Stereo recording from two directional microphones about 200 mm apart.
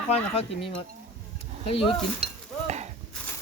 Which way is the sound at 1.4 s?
25° left (ahead or behind).